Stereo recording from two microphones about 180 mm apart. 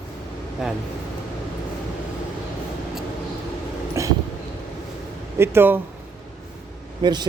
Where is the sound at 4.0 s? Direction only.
15° right (ahead or behind).